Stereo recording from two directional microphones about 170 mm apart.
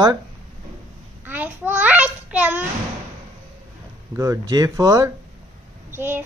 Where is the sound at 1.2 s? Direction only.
10° right (ahead or behind).